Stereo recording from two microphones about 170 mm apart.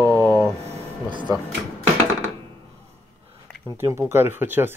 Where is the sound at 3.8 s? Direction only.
15° right (ahead or behind).